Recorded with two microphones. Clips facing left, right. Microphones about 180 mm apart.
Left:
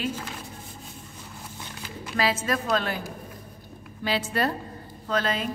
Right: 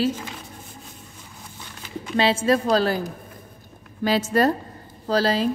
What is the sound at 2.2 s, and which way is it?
Speech, 30° right (ahead or behind).